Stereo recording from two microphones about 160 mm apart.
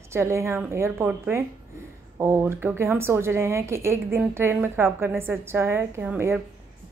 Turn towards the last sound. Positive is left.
turn(degrees=-10)  # may be behind; listen again after turning